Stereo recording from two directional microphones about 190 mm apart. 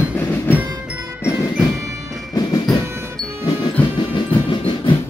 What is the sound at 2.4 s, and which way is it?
Music, 20° left (ahead or behind).